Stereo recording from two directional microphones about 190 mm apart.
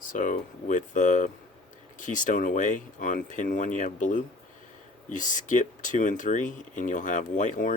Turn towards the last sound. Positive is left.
turn(degrees=40)  # may be behind; listen again after turning